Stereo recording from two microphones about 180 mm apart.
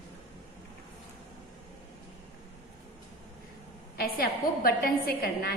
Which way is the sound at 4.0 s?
55° left (ahead or behind).